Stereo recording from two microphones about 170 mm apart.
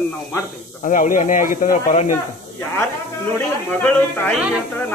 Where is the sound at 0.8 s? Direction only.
50° left (ahead or behind).